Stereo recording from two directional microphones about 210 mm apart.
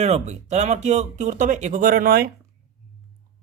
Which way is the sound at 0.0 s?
30° right (ahead or behind).